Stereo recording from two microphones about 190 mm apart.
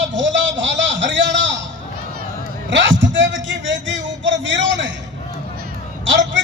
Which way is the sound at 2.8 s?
75° right (ahead or behind).